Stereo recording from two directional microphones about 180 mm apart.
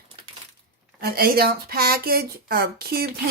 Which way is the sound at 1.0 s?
60° right (ahead or behind).